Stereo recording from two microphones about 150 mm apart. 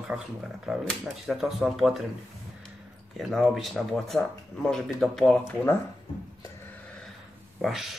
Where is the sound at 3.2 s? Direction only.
Centre (ahead or behind).